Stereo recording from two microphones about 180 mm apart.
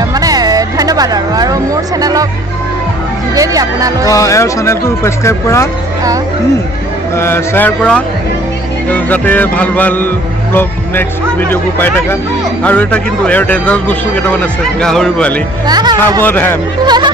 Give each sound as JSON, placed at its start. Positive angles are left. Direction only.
{"t": 0.1, "sound": "a sound", "side_deg": -20}
{"t": 3.3, "sound": "speech", "side_deg": -20}
{"t": 4.1, "sound": "music", "side_deg": 15}
{"t": 7.2, "sound": "music", "side_deg": 15}
{"t": 15.6, "sound": "speech", "side_deg": -25}
{"t": 16.2, "sound": "music", "side_deg": 10}
{"t": 16.8, "sound": "speech", "side_deg": -25}